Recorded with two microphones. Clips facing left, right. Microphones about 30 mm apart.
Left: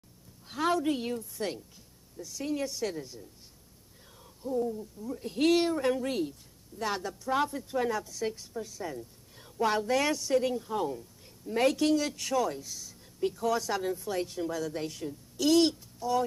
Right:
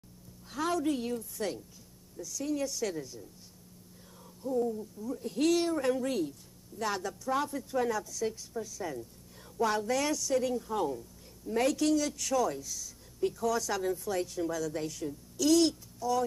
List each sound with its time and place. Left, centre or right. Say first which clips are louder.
0.5 s a sound: left 2 dB; left
1.4 s speech: even; centre
2.2 s speech: even; left
4.6 s speech: even; centre
5.2 s speech: left 2 dB; left
8.8 s speech: even; centre
9.6 s speech: left 2 dB; left
10.6 s speech: even; centre
11.4 s speech: left 2 dB; left